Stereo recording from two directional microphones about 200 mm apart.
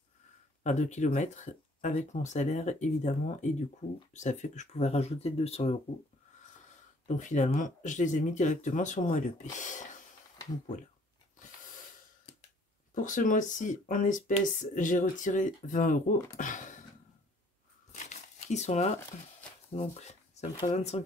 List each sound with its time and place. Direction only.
0.7 s speech: 35° left (ahead or behind)
7.1 s speech: 40° left (ahead or behind)
12.9 s speech: 40° left (ahead or behind)
16.3 s a sound: 40° left (ahead or behind)
17.9 s crumpling: 35° left (ahead or behind)
19.7 s speech: 35° left (ahead or behind)